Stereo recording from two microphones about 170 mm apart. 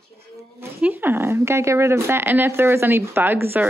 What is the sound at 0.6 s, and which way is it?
Speech, 10° right (ahead or behind).